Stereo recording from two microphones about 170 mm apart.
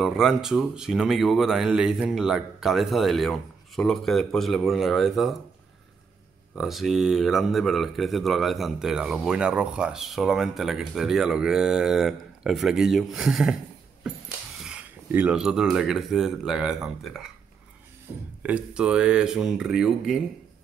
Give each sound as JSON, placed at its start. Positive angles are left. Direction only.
{"t": 0.0, "sound": "speech", "side_deg": 0}
{"t": 6.5, "sound": "speech", "side_deg": 0}
{"t": 14.6, "sound": "speech", "side_deg": -5}
{"t": 18.4, "sound": "speech", "side_deg": -5}